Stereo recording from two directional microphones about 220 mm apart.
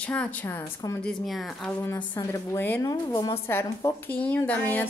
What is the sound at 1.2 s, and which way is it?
A woman's voice, centre (ahead or behind).